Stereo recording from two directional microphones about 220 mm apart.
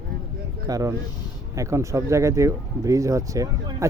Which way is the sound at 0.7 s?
15° right (ahead or behind).